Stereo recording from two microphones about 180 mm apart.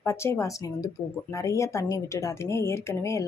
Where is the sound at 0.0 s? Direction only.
15° left (ahead or behind).